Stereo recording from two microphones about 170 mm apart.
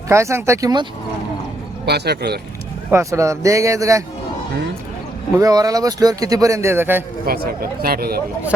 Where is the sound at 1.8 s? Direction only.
75° right (ahead or behind).